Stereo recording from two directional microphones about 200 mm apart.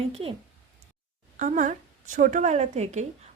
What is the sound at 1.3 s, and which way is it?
A woman's voice, 40° right (ahead or behind).